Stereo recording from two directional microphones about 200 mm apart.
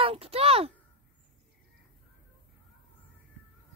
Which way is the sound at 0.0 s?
30° right (ahead or behind).